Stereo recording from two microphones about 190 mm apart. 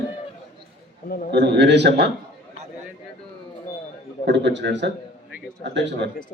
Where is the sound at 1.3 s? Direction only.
65° right (ahead or behind).